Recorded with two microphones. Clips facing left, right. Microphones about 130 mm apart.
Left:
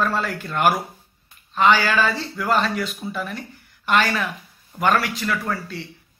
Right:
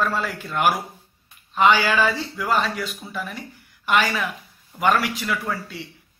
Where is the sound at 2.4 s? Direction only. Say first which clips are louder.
Left 2 dB; 5° right (ahead or behind).